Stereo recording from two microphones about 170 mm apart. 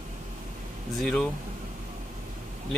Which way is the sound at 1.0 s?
5° left (ahead or behind).